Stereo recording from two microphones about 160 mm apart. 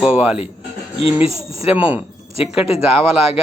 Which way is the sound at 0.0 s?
5° right (ahead or behind).